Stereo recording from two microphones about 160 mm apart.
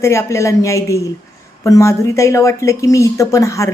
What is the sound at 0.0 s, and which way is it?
Speech, 15° left (ahead or behind).